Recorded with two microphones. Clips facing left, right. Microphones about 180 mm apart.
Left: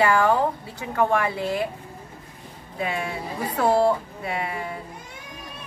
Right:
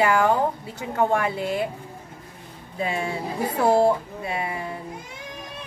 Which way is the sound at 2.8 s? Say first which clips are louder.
Right 2 dB; 25° right (ahead or behind).